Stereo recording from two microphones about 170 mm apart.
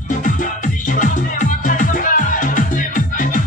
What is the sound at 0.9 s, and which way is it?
Music, 50° left (ahead or behind).